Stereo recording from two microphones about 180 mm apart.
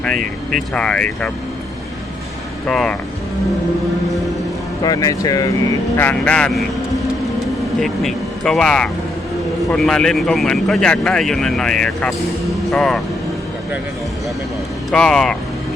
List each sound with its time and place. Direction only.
0.5 s speech: 5° left (ahead or behind)
2.6 s speech: 5° left (ahead or behind)
4.8 s speech: 20° left (ahead or behind)
6.0 s speech: 10° left (ahead or behind)
7.8 s speech: 5° left (ahead or behind)
14.8 s speech: 5° left (ahead or behind)